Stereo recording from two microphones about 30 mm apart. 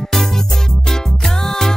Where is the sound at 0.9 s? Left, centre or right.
Centre.